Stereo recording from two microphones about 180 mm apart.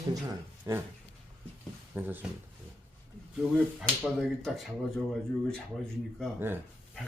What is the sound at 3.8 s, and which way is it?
Speech, centre (ahead or behind).